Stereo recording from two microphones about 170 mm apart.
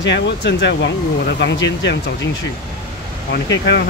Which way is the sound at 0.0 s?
90° left.